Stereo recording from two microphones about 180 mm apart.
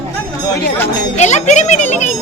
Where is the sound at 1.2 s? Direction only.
40° left (ahead or behind).